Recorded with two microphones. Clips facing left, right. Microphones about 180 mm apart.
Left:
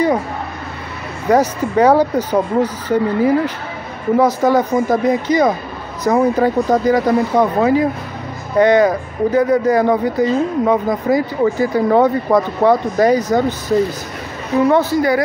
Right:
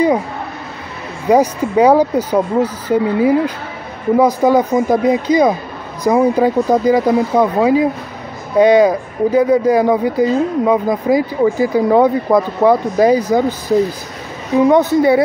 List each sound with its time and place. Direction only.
1.3 s a woman's voice: 10° right (ahead or behind)